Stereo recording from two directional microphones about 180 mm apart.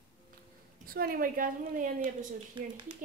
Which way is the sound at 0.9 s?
55° right (ahead or behind).